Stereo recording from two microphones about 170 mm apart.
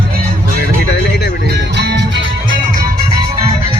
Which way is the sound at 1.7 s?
85° right.